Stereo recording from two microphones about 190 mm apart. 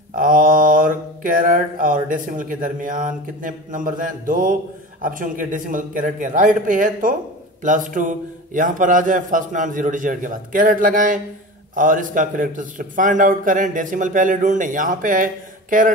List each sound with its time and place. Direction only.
0.1 s mantra: 45° right (ahead or behind)